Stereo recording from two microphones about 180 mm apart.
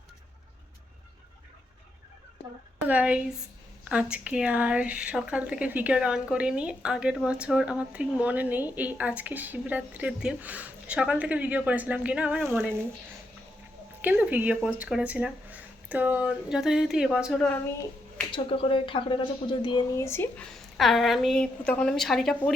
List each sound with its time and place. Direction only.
2.8 s speech: 10° right (ahead or behind)
14.0 s speech: 10° right (ahead or behind)
18.3 s speech: 30° left (ahead or behind)
20.6 s speech: centre (ahead or behind)